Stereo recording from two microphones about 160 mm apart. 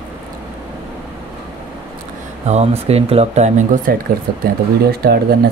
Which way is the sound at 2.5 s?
40° right (ahead or behind).